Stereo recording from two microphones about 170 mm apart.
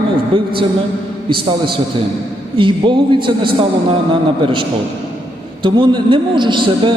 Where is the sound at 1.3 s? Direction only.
30° right (ahead or behind).